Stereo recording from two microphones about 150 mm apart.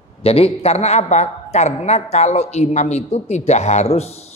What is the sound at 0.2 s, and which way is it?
A man's voice, 40° left (ahead or behind).